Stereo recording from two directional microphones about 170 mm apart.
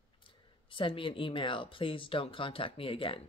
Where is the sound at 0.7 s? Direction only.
30° left (ahead or behind).